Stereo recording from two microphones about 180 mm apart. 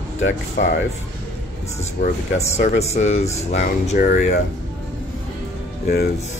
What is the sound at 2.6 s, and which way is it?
Speech, 35° left (ahead or behind).